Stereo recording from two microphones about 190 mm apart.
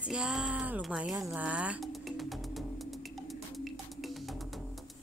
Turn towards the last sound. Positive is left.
turn(degrees=0)  # may be behind; listen again after turning